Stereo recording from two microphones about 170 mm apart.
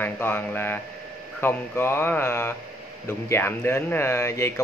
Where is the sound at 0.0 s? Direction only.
10° left (ahead or behind).